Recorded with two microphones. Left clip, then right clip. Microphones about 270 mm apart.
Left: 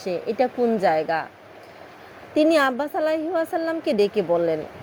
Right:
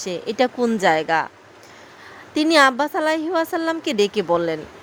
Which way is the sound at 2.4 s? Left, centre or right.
Centre.